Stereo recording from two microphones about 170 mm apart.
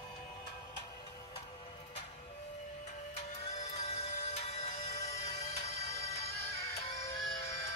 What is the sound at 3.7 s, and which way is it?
Music, 40° left (ahead or behind).